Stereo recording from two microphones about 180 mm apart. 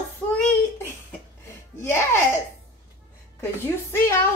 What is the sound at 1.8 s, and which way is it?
Speech, 15° left (ahead or behind).